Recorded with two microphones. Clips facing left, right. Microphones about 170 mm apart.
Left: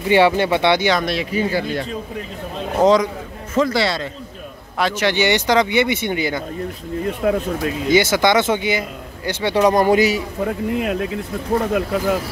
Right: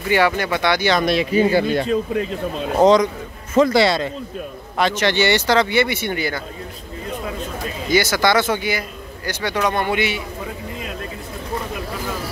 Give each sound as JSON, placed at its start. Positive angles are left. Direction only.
{"t": 0.1, "sound": "a man's voice", "side_deg": 25}
{"t": 1.0, "sound": "a man's voice", "side_deg": -20}
{"t": 2.8, "sound": "a man's voice", "side_deg": 5}
{"t": 3.5, "sound": "a man's voice", "side_deg": -20}
{"t": 4.7, "sound": "speech", "side_deg": 5}
{"t": 7.2, "sound": "speech", "side_deg": 60}
{"t": 7.9, "sound": "a man's voice", "side_deg": 20}
{"t": 10.4, "sound": "speech", "side_deg": 65}